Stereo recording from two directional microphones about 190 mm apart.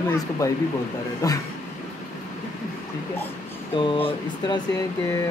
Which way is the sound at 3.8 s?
25° left (ahead or behind).